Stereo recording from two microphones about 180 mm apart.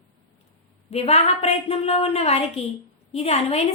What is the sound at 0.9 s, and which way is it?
A woman's voice, 35° left (ahead or behind).